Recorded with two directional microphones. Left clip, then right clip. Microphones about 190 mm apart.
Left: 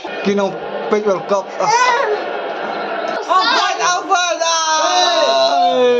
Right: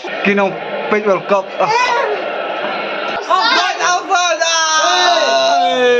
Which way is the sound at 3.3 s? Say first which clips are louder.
Right 1 dB; 5° left (ahead or behind).